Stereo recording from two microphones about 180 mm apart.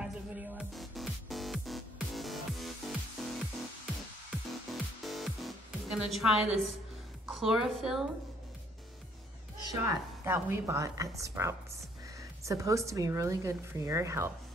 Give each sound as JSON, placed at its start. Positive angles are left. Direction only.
{"t": 0.0, "sound": "music", "side_deg": -5}
{"t": 4.5, "sound": "music", "side_deg": 0}
{"t": 7.2, "sound": "speech", "side_deg": 0}
{"t": 9.7, "sound": "a woman's voice", "side_deg": -15}